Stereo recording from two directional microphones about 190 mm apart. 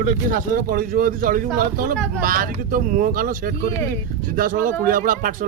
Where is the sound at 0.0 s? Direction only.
45° right (ahead or behind).